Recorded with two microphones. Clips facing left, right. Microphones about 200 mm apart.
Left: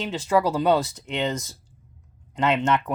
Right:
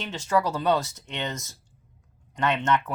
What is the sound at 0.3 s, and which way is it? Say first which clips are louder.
Speech: left 3 dB; 15° left (ahead or behind).